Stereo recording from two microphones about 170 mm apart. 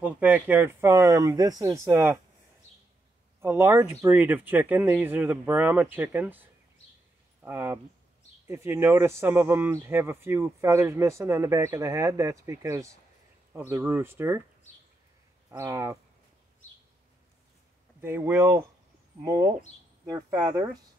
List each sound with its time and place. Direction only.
0.0 s speech: 10° right (ahead or behind)
3.3 s speech: 15° right (ahead or behind)
7.4 s speech: 15° right (ahead or behind)
15.5 s speech: 15° right (ahead or behind)
18.0 s speech: 15° right (ahead or behind)